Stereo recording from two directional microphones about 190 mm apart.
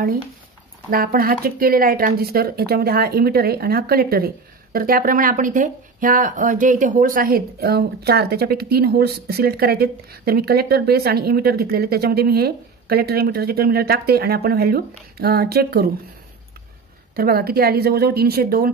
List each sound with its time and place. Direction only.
0.8 s speech: 50° right (ahead or behind)
17.1 s speech: 55° right (ahead or behind)